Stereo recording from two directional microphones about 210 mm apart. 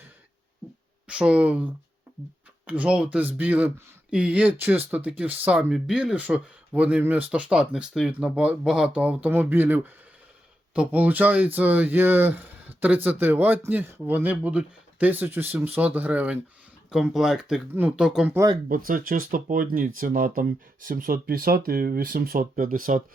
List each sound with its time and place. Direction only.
1.0 s speech: 5° right (ahead or behind)
18.3 s speech: 15° right (ahead or behind)
18.7 s speech: 40° right (ahead or behind)